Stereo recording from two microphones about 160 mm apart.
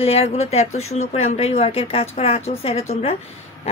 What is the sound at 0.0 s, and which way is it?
Speech, 40° left (ahead or behind).